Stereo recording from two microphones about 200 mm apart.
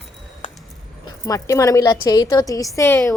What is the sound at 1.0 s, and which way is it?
A woman's voice, 15° left (ahead or behind).